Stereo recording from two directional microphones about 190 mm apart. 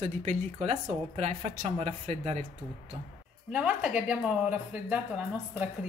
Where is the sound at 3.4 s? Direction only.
5° right (ahead or behind).